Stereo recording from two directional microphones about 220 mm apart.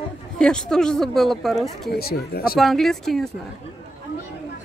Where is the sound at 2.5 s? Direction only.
Centre (ahead or behind).